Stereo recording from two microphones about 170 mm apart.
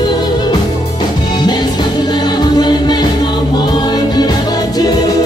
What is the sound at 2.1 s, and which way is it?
Music, 25° left (ahead or behind).